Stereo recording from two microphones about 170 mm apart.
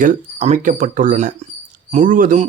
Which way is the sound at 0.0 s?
45° right (ahead or behind).